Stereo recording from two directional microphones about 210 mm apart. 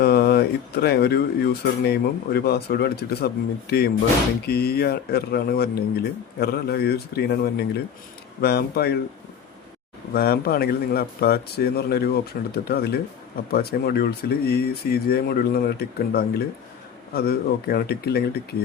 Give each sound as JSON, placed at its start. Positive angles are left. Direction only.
{"t": 0.0, "sound": "speech", "side_deg": 50}
{"t": 10.2, "sound": "speech", "side_deg": 45}